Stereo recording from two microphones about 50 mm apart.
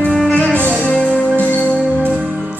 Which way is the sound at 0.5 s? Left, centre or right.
Left.